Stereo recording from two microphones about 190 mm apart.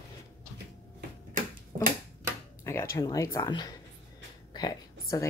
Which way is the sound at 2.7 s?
15° left (ahead or behind).